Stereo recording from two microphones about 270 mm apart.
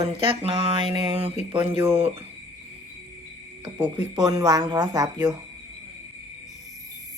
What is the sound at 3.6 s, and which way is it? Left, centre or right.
Speech, centre.